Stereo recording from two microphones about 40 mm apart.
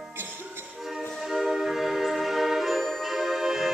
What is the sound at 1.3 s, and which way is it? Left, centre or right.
Music, centre.